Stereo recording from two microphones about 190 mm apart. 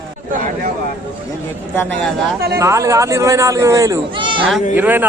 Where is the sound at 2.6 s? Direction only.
15° right (ahead or behind).